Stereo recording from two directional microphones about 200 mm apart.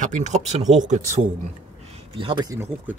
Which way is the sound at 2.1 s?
25° right (ahead or behind).